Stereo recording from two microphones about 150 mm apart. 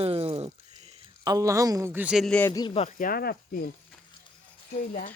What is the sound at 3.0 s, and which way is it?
Speech, 75° left (ahead or behind).